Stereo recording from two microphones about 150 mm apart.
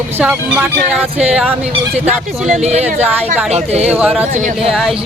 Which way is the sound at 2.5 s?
45° right (ahead or behind).